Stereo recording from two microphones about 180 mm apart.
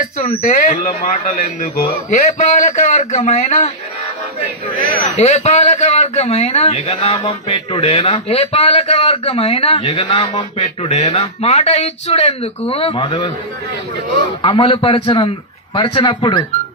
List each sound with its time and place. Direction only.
0.3 s a man's voice: 45° left (ahead or behind)
2.4 s a man's voice: 45° left (ahead or behind)
5.1 s a man's voice: 35° left (ahead or behind)